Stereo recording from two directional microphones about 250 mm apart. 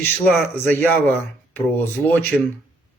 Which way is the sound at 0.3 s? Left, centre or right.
Centre.